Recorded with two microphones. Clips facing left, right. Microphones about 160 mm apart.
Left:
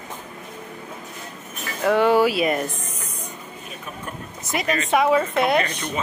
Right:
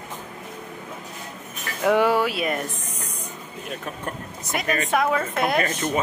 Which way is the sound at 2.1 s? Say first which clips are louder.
Left 5 dB; 5° left (ahead or behind).